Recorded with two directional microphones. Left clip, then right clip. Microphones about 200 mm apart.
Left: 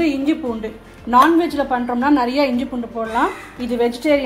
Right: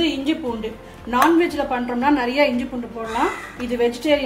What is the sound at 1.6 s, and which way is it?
Speech, 30° left (ahead or behind).